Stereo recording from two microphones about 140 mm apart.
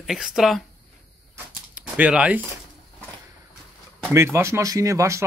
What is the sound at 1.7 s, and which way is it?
Speech, 10° right (ahead or behind).